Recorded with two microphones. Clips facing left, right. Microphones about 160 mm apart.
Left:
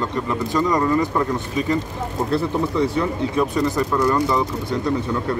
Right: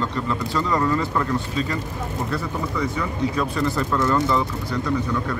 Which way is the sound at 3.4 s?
20° left (ahead or behind).